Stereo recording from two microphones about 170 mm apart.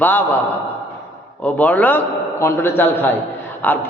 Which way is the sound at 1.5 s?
10° left (ahead or behind).